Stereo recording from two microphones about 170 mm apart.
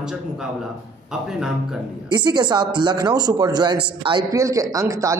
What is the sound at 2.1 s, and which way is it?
A man's voice, 25° right (ahead or behind).